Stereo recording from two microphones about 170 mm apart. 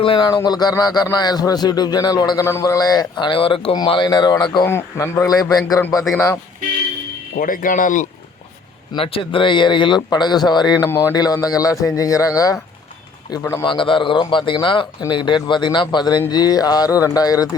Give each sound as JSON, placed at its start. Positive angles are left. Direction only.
{"t": 0.0, "sound": "speech", "side_deg": 30}
{"t": 4.6, "sound": "speech", "side_deg": 15}
{"t": 7.3, "sound": "speech", "side_deg": 55}
{"t": 8.9, "sound": "speech", "side_deg": 30}
{"t": 13.7, "sound": "speech", "side_deg": 30}